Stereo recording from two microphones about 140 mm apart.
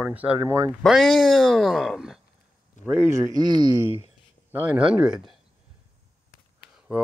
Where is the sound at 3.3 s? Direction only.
30° right (ahead or behind).